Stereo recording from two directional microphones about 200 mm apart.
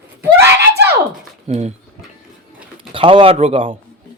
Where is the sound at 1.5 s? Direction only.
35° right (ahead or behind).